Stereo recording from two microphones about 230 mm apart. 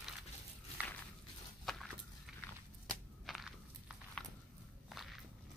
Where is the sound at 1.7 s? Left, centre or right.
Centre.